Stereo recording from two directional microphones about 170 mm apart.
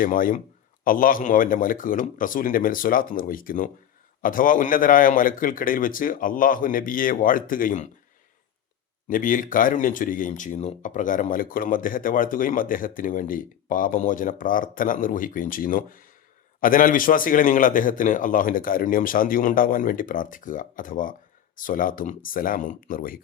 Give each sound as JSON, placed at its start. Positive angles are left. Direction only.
{"t": 0.0, "sound": "a man's voice", "side_deg": 55}
{"t": 9.0, "sound": "speech", "side_deg": 55}